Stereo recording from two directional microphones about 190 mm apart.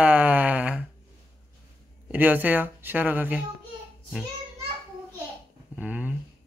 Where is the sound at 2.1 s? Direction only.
10° right (ahead or behind).